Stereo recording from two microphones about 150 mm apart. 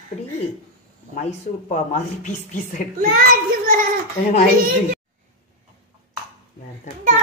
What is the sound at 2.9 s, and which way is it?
Speech, 80° right.